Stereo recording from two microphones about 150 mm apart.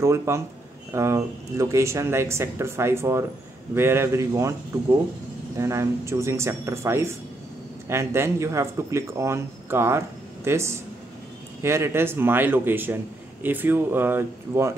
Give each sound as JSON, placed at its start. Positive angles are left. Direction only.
{"t": 0.0, "sound": "a man's voice", "side_deg": -20}